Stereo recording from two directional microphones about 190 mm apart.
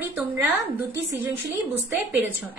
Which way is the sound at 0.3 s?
10° right (ahead or behind).